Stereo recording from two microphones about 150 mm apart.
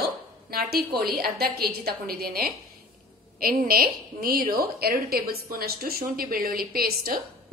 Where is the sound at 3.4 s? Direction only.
75° right (ahead or behind).